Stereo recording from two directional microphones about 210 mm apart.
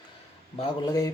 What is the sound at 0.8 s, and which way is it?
Speech, 15° left (ahead or behind).